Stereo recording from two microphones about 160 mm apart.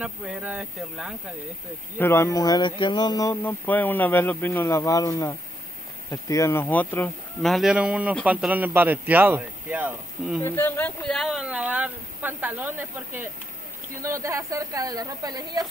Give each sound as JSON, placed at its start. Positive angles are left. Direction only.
{"t": 0.0, "sound": "speech", "side_deg": -5}
{"t": 2.0, "sound": "speech", "side_deg": 15}
{"t": 7.5, "sound": "speech", "side_deg": -5}
{"t": 10.4, "sound": "speech", "side_deg": 10}